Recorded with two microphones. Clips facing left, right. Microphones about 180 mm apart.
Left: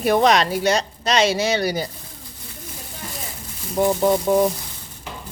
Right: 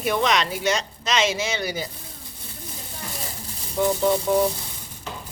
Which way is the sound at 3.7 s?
40° left (ahead or behind).